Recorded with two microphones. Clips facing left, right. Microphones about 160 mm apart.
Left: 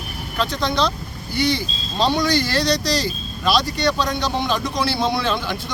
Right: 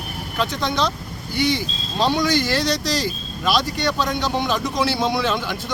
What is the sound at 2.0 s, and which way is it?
Speech, 15° right (ahead or behind).